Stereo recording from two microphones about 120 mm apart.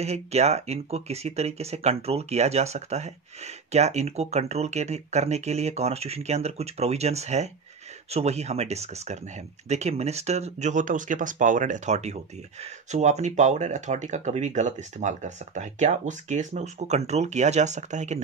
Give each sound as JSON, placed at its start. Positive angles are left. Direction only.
{"t": 0.0, "sound": "speech", "side_deg": -65}